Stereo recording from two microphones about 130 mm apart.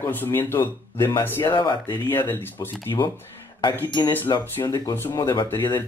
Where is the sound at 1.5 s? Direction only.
35° left (ahead or behind).